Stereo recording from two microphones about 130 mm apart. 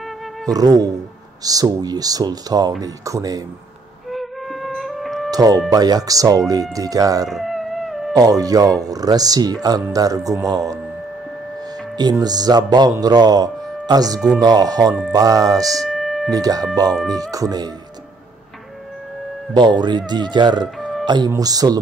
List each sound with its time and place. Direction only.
0.5 s speech: 30° right (ahead or behind)
4.1 s music: centre (ahead or behind)
5.3 s speech: 30° right (ahead or behind)
7.2 s a sound: centre (ahead or behind)
8.1 s speech: 30° right (ahead or behind)
12.0 s speech: 30° right (ahead or behind)
15.8 s music: centre (ahead or behind)
16.3 s speech: 30° right (ahead or behind)
19.5 s speech: 35° right (ahead or behind)
21.0 s music: 35° right (ahead or behind)
21.4 s speech: 30° right (ahead or behind)